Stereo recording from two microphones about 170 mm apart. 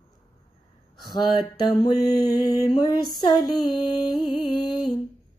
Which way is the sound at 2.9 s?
25° left (ahead or behind).